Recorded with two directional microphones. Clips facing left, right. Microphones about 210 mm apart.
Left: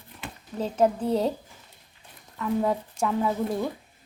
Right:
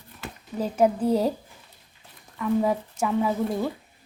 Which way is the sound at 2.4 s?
5° right (ahead or behind).